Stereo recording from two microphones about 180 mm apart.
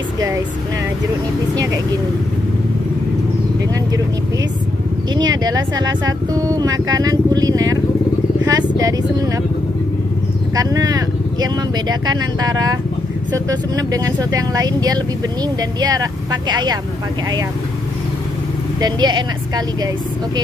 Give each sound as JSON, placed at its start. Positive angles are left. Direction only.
{"t": 5.1, "sound": "speech", "side_deg": -20}
{"t": 10.5, "sound": "speech", "side_deg": -20}
{"t": 18.8, "sound": "speech", "side_deg": -25}